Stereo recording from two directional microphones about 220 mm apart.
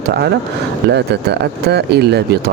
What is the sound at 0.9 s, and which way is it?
Speech, 50° right (ahead or behind).